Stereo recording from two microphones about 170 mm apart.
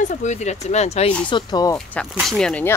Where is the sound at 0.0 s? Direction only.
45° left (ahead or behind).